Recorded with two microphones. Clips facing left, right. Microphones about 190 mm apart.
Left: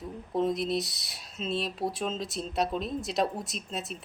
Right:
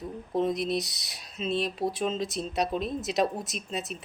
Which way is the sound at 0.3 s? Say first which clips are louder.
Right 1 dB; centre (ahead or behind).